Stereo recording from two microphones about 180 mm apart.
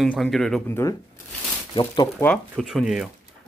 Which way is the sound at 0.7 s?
15° left (ahead or behind).